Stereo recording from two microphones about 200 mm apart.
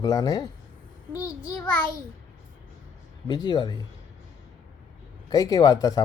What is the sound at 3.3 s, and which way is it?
Speech, 20° left (ahead or behind).